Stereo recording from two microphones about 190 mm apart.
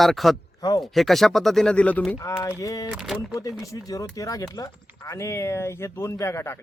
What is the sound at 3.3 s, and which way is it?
Speech, 20° left (ahead or behind).